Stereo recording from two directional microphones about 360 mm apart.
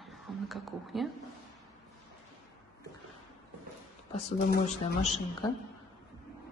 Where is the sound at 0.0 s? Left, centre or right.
Centre.